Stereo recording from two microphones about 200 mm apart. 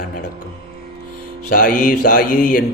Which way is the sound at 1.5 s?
40° left (ahead or behind).